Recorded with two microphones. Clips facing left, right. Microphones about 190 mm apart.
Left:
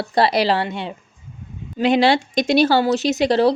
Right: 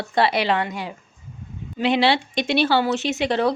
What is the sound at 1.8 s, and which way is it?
A woman's voice, 45° left (ahead or behind).